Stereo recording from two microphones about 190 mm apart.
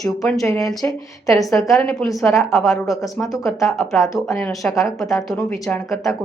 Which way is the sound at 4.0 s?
15° left (ahead or behind).